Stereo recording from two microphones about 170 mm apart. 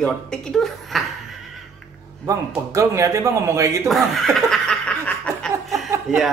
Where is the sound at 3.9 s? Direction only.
Centre (ahead or behind).